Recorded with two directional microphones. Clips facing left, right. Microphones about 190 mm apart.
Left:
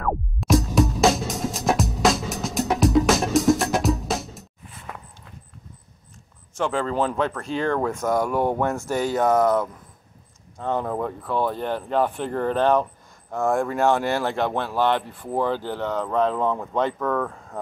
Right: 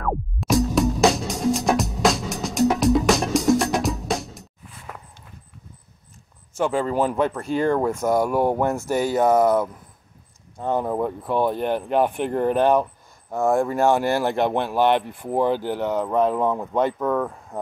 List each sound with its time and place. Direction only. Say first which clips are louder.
0.0 s music: even; centre (ahead or behind)
6.5 s speech: right 2 dB; 10° right (ahead or behind)